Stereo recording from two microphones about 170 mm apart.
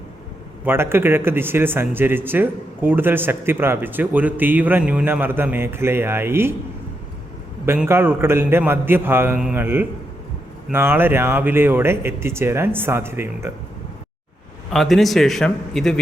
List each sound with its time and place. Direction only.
0.6 s speech: 15° right (ahead or behind)
7.6 s speech: 15° right (ahead or behind)
14.7 s a man's voice: centre (ahead or behind)